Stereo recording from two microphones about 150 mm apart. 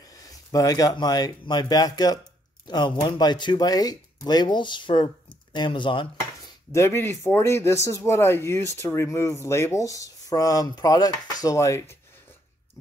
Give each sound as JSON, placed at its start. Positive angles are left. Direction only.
{"t": 0.2, "sound": "speech", "side_deg": 25}
{"t": 6.7, "sound": "speech", "side_deg": 15}